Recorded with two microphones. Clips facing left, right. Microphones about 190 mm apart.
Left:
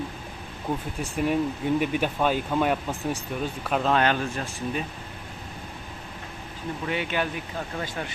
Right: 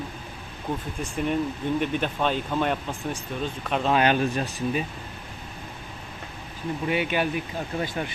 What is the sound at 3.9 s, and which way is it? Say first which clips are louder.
Speech: right 2 dB; 15° right (ahead or behind).